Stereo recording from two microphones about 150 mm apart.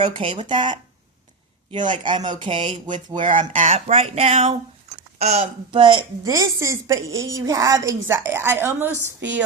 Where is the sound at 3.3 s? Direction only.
55° right (ahead or behind); by 6.0 s 35° right (ahead or behind).